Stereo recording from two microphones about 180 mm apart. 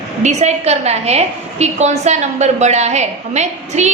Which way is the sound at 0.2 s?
40° right (ahead or behind).